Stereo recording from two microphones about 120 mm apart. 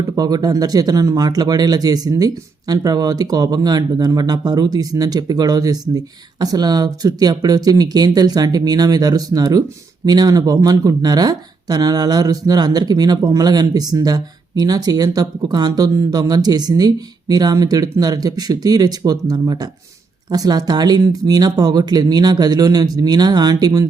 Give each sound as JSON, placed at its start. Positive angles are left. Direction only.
{"t": 0.2, "sound": "speech", "side_deg": -35}